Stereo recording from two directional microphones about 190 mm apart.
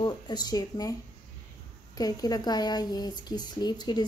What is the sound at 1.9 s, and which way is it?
A woman's voice, 20° left (ahead or behind).